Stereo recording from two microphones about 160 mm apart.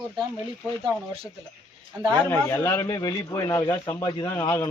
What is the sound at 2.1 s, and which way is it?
A man's voice, 10° left (ahead or behind).